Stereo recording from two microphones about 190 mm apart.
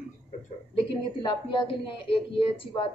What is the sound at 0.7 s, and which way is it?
A woman's voice, 25° left (ahead or behind).